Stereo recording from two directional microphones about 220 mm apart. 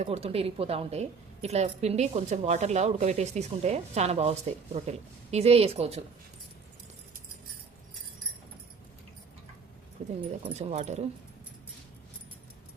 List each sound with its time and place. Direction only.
0.0 s a woman's voice: 30° right (ahead or behind)
10.0 s speech: 30° right (ahead or behind)